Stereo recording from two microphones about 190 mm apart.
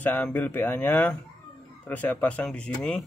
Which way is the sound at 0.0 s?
10° left (ahead or behind).